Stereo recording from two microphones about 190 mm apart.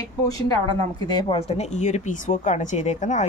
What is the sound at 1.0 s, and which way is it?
Speech, 25° left (ahead or behind).